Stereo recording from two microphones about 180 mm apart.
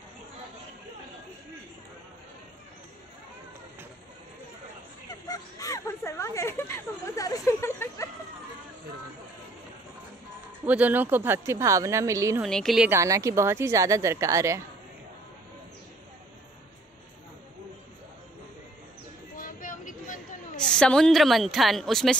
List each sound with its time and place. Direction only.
5.3 s speech: 20° left (ahead or behind)
10.6 s speech: 10° right (ahead or behind)
12.4 s a woman's voice: centre (ahead or behind)
12.9 s speech: 15° right (ahead or behind)
19.3 s vehicle: 50° left (ahead or behind)
20.7 s a woman's voice: 5° left (ahead or behind)